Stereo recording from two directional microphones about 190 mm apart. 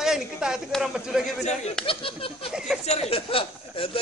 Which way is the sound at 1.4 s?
35° left (ahead or behind).